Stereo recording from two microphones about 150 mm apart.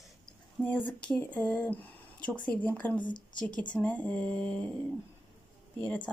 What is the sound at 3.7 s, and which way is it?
Speech, 10° left (ahead or behind).